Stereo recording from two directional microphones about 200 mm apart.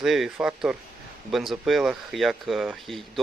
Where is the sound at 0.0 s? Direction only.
Centre (ahead or behind).